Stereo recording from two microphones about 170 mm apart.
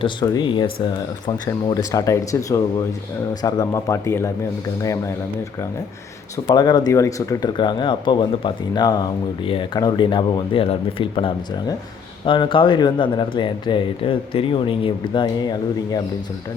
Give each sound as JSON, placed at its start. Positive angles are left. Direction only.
{"t": 0.0, "sound": "speech", "side_deg": 25}
{"t": 6.3, "sound": "speech", "side_deg": 25}